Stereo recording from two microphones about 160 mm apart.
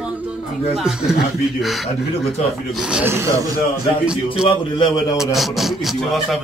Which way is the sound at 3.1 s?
15° right (ahead or behind).